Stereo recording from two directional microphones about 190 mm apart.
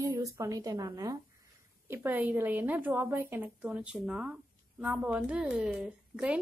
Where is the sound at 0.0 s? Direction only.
15° right (ahead or behind).